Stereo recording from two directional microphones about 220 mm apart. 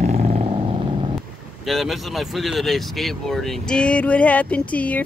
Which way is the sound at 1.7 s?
Centre (ahead or behind).